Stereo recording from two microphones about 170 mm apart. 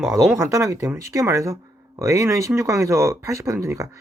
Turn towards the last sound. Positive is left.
turn(degrees=-15)  # may be behind; listen again after turning